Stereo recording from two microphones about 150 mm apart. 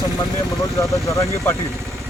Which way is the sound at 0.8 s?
20° left (ahead or behind).